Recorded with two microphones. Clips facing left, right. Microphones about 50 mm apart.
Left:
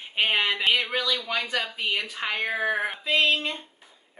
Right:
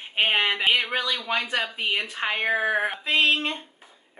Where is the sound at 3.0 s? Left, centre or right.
Right.